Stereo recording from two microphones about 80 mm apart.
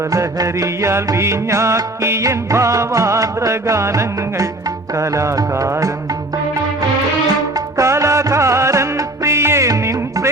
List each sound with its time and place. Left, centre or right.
0.1 s music: right
7.8 s music: right